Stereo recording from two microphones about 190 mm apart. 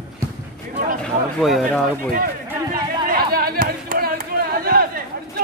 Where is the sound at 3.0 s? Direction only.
50° right (ahead or behind).